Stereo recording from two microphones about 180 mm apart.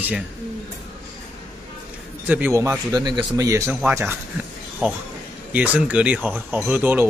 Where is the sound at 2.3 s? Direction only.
10° right (ahead or behind).